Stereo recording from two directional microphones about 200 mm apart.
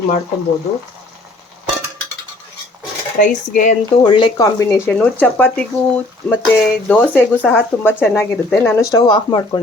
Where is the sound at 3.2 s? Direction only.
40° left (ahead or behind).